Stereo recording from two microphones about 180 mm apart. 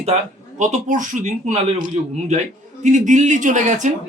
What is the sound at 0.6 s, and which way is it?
Speech, 45° right (ahead or behind).